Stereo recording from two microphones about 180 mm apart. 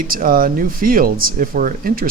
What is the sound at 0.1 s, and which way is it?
Speech, 50° right (ahead or behind).